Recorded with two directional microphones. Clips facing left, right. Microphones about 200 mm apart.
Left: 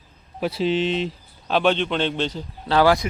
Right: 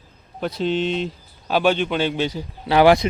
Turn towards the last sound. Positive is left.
turn(degrees=-20)  # may be behind; listen again after turning